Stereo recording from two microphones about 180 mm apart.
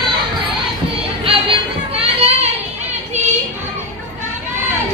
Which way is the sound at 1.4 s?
35° right (ahead or behind).